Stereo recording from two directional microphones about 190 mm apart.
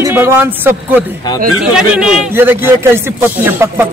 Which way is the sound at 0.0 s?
10° right (ahead or behind).